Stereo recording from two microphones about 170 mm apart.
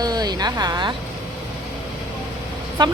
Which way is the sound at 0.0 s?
25° right (ahead or behind).